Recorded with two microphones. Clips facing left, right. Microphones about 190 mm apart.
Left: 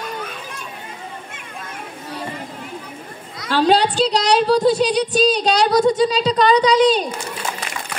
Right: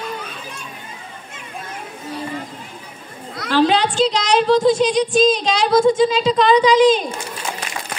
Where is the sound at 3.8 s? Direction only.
35° left (ahead or behind).